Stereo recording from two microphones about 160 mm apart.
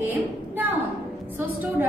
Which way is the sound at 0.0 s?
10° right (ahead or behind).